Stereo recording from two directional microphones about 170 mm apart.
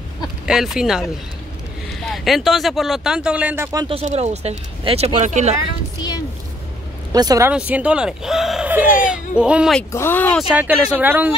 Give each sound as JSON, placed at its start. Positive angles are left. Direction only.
{"t": 0.5, "sound": "speech", "side_deg": -5}
{"t": 3.9, "sound": "speech", "side_deg": -40}
{"t": 7.1, "sound": "speech", "side_deg": -20}
{"t": 7.5, "sound": "speech", "side_deg": -5}
{"t": 9.9, "sound": "speech", "side_deg": 10}
{"t": 10.5, "sound": "speech", "side_deg": -10}